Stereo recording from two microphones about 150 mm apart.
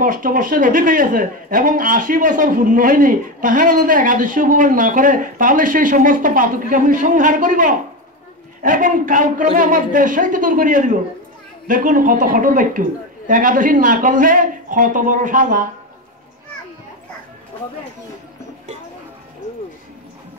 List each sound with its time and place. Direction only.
0.0 s a man's voice: 65° right (ahead or behind)